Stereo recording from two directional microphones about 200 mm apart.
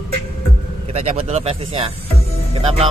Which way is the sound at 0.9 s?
35° right (ahead or behind).